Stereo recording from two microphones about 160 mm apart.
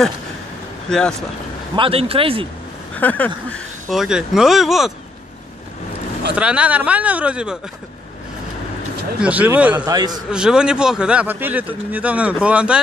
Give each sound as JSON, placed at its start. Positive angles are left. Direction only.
{"t": 0.8, "sound": "speech", "side_deg": 5}
{"t": 1.8, "sound": "speech", "side_deg": -35}
{"t": 2.9, "sound": "speech", "side_deg": 10}
{"t": 6.3, "sound": "speech", "side_deg": -10}
{"t": 9.2, "sound": "speech", "side_deg": -10}
{"t": 9.8, "sound": "a man's voice", "side_deg": -25}
{"t": 10.3, "sound": "speech", "side_deg": -5}